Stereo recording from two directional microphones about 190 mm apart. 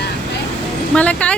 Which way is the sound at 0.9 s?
5° left (ahead or behind).